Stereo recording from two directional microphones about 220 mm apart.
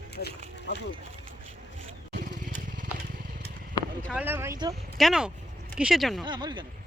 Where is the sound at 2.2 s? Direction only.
35° right (ahead or behind).